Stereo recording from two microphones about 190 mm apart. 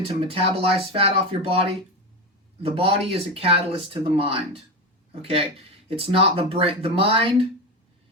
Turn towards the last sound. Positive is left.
turn(degrees=-30)  # may be behind; listen again after turning